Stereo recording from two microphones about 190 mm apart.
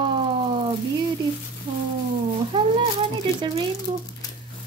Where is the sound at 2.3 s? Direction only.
25° right (ahead or behind).